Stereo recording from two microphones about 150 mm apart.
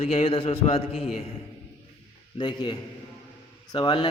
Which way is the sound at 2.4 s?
30° left (ahead or behind).